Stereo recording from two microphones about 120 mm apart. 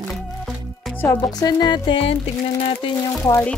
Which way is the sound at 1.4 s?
35° left (ahead or behind).